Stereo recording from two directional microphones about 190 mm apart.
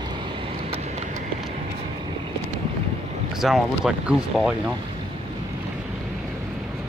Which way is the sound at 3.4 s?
Centre (ahead or behind).